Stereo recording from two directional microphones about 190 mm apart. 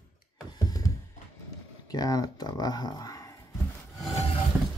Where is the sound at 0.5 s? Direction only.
20° left (ahead or behind).